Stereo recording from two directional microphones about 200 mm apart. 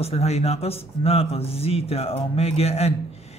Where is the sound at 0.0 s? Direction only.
30° left (ahead or behind).